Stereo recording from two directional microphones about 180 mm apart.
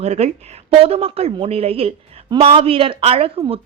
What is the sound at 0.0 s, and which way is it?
Speech, 35° right (ahead or behind).